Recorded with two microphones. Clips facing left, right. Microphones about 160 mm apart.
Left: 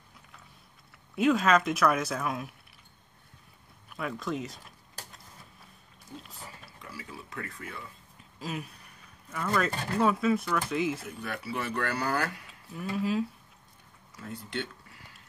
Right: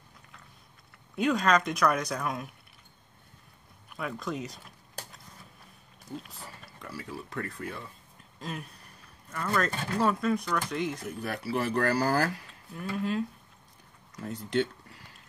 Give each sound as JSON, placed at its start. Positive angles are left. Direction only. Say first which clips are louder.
{"t": 1.1, "sound": "speech", "louder": "left 2 dB", "side_deg": 5}
{"t": 3.9, "sound": "a sound", "louder": "left 1 dB", "side_deg": 0}
{"t": 6.8, "sound": "a sound", "louder": "right 4 dB", "side_deg": -45}
{"t": 7.2, "sound": "speech", "louder": "right 4 dB", "side_deg": -40}
{"t": 7.5, "sound": "speech", "louder": "right 4 dB", "side_deg": -50}
{"t": 8.4, "sound": "speech", "louder": "left 2 dB", "side_deg": 5}
{"t": 11.1, "sound": "speech", "louder": "right 3 dB", "side_deg": -40}
{"t": 12.7, "sound": "speech", "louder": "left 1 dB", "side_deg": 5}
{"t": 14.2, "sound": "speech", "louder": "right 7 dB", "side_deg": -40}